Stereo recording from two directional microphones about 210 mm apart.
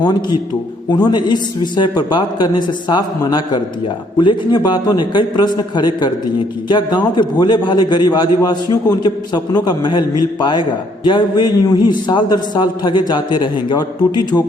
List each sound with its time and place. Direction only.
0.0 s a man's voice: 20° left (ahead or behind)